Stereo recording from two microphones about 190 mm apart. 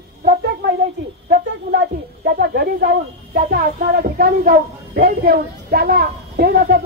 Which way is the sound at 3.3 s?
50° right (ahead or behind).